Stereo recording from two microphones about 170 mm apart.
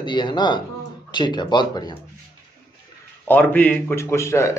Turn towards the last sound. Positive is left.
turn(degrees=15)  # may be behind; listen again after turning